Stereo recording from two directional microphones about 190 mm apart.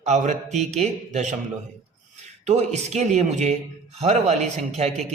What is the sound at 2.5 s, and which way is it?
A man's voice, 35° right (ahead or behind).